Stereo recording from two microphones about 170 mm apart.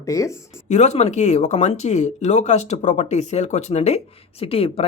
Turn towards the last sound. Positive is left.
turn(degrees=35)  # may be behind; listen again after turning